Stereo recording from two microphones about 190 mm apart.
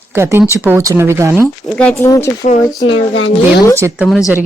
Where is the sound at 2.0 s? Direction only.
15° left (ahead or behind).